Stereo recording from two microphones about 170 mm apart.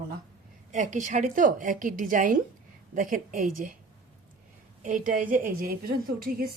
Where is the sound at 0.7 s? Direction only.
45° right (ahead or behind).